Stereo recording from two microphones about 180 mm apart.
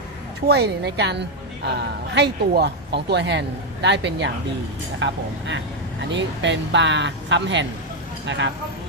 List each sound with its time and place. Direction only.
0.4 s a woman's voice: 65° right (ahead or behind)
4.9 s speech: 90° right
6.1 s speech: 80° right